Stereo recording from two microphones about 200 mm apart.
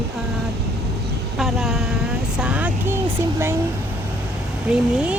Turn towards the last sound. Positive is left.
turn(degrees=-5)  # may be behind; listen again after turning